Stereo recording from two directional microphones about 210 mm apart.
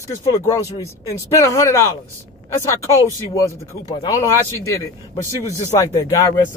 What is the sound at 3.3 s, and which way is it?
Speech, 15° left (ahead or behind).